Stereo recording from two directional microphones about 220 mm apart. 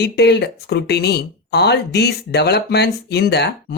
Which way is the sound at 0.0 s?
50° left (ahead or behind).